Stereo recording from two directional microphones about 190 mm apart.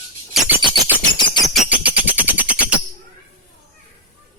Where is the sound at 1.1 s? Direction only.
25° left (ahead or behind).